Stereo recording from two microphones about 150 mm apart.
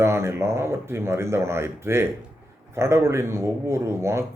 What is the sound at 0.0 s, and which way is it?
A man's voice, 15° right (ahead or behind).